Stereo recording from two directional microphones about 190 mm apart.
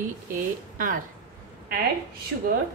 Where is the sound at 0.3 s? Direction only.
45° right (ahead or behind).